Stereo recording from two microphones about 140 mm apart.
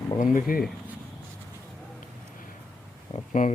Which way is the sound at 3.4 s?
75° left (ahead or behind).